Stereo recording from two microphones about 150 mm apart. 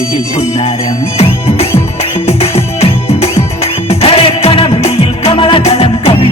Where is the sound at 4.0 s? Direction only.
40° left (ahead or behind).